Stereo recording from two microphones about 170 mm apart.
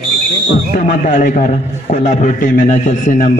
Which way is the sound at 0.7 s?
45° left (ahead or behind).